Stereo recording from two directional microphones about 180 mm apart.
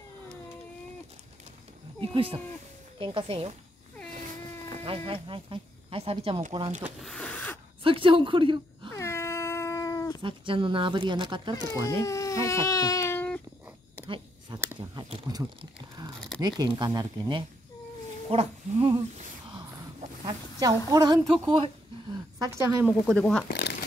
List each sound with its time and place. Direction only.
2.0 s speech: 30° right (ahead or behind)
4.8 s speech: 30° right (ahead or behind)
6.8 s snake: centre (ahead or behind)
7.8 s a woman's voice: 30° right (ahead or behind)
8.9 s cat: 15° left (ahead or behind)
10.2 s speech: 30° right (ahead or behind)
11.9 s speech: 15° left (ahead or behind)
14.0 s a sound: 25° right (ahead or behind)
15.0 s a woman's voice: 25° right (ahead or behind)
22.8 s speech: centre (ahead or behind)
23.5 s shuffling cards: 65° left (ahead or behind)